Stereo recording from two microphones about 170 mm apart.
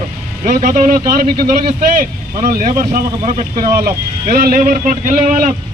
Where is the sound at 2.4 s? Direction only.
60° right (ahead or behind).